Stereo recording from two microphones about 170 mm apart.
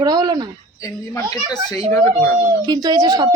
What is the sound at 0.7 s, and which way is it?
A child's voice, 15° left (ahead or behind).